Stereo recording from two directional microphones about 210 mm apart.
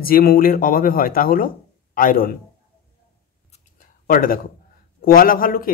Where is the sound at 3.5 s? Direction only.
40° left (ahead or behind).